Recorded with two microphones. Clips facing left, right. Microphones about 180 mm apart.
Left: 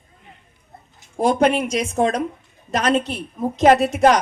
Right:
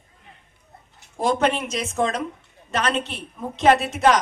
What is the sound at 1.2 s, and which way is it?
A woman's voice, 40° left (ahead or behind).